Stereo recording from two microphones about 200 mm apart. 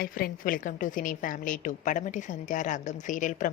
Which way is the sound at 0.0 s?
45° left (ahead or behind).